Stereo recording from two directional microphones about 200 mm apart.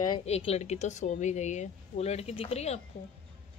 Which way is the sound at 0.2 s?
30° left (ahead or behind).